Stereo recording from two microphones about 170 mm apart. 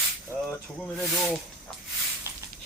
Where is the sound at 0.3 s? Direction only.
15° right (ahead or behind).